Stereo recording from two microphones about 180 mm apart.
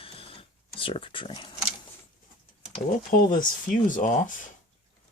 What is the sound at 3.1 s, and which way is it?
Speech, 50° left (ahead or behind).